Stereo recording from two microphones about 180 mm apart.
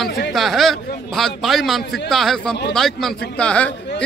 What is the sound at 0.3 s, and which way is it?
A man's voice, centre (ahead or behind).